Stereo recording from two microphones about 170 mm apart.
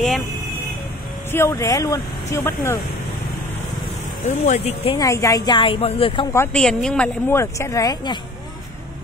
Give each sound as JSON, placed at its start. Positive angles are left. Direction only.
{"t": 1.3, "sound": "a woman's voice", "side_deg": 15}
{"t": 4.2, "sound": "speech", "side_deg": 45}
{"t": 4.9, "sound": "a woman's voice", "side_deg": 20}
{"t": 6.3, "sound": "a woman's voice", "side_deg": 15}